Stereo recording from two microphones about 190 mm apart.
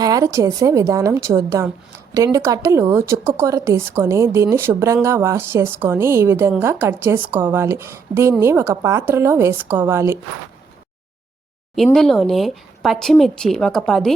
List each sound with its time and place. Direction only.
0.0 s a woman's voice: 20° right (ahead or behind)
11.7 s speech: centre (ahead or behind)